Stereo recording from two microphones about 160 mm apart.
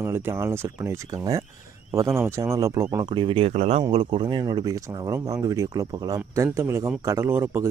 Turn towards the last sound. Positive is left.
turn(degrees=-15)  # may be behind; listen again after turning